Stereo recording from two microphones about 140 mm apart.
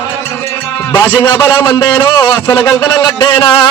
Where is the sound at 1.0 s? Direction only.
30° left (ahead or behind).